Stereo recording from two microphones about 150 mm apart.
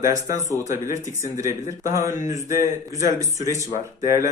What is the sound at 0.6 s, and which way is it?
Speech, 20° right (ahead or behind).